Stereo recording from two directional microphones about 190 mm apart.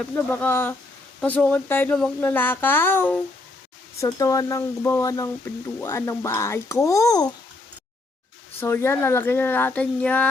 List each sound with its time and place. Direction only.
0.0 s speech: 10° left (ahead or behind)
8.6 s speech: 15° left (ahead or behind)